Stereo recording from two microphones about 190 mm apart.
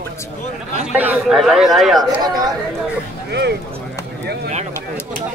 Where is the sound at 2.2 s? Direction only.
20° right (ahead or behind).